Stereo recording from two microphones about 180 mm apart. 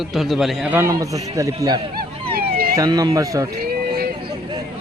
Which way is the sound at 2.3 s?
55° right (ahead or behind).